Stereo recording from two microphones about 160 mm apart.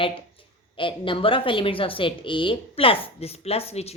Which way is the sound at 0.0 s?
30° left (ahead or behind).